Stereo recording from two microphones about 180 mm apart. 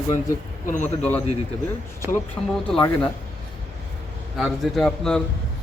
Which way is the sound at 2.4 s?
5° left (ahead or behind).